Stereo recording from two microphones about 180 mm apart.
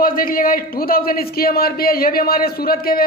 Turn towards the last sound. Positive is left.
turn(degrees=55)  # may be behind; listen again after turning